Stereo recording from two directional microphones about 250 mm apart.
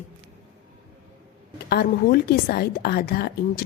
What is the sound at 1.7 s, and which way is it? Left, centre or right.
A woman's voice, left.